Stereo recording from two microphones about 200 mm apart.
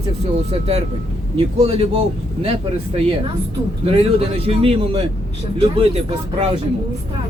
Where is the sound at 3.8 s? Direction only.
30° right (ahead or behind).